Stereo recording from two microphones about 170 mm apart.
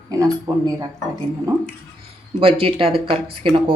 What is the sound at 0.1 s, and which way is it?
Speech, 20° right (ahead or behind).